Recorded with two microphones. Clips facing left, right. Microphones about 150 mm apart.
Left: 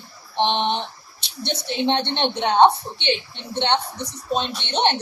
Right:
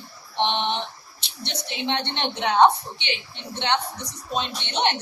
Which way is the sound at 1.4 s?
30° left (ahead or behind).